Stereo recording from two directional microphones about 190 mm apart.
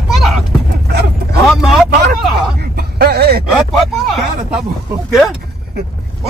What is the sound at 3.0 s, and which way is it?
Speech, 55° right (ahead or behind).